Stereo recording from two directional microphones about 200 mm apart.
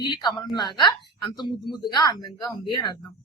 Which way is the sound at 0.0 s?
20° left (ahead or behind).